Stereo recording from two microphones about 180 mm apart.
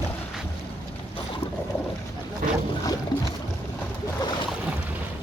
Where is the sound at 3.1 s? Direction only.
20° left (ahead or behind).